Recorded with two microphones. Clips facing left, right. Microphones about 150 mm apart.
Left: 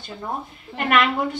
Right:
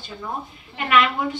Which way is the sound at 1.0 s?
Centre (ahead or behind).